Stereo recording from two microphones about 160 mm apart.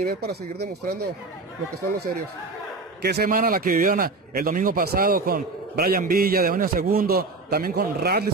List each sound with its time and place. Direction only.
0.0 s speech: 75° right (ahead or behind)
3.0 s a man's voice: 85° right